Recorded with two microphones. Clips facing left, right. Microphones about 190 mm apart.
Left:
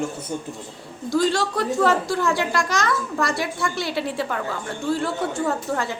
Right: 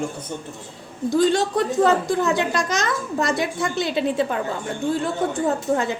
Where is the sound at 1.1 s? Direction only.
20° right (ahead or behind).